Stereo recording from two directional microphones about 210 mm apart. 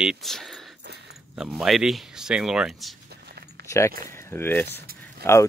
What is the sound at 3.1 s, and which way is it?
Keys jangling, 50° right (ahead or behind).